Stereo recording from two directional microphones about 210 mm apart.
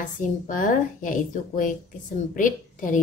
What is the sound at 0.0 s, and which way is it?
A woman's voice, 40° left (ahead or behind).